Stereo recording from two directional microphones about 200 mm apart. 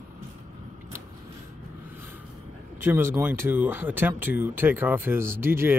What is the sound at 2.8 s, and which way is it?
Speech, 10° right (ahead or behind).